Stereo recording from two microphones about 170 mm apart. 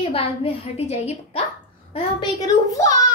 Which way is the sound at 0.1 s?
35° left (ahead or behind).